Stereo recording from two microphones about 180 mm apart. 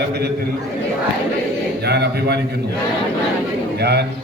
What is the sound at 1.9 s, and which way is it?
Speech, 65° right (ahead or behind).